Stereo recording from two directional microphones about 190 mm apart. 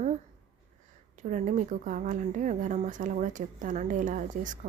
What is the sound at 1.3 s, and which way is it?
Speech, 40° right (ahead or behind).